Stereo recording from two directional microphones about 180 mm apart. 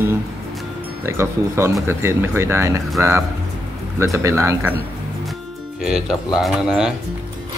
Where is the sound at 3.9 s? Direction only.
15° right (ahead or behind).